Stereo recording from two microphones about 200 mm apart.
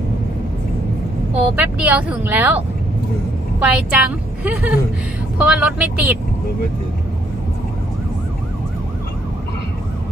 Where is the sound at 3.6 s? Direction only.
5° right (ahead or behind).